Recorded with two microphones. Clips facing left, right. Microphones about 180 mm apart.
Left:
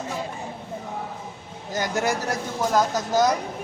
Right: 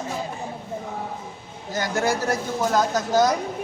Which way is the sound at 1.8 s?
15° left (ahead or behind).